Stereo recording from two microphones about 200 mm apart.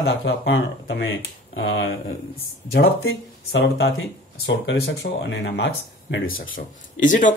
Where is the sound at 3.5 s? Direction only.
55° left (ahead or behind); by 6.4 s 75° left (ahead or behind).